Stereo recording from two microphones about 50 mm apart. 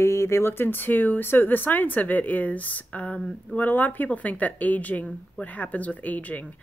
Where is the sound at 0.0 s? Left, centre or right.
Left.